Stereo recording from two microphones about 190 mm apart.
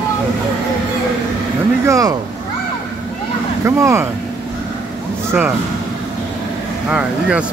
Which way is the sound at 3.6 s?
15° right (ahead or behind).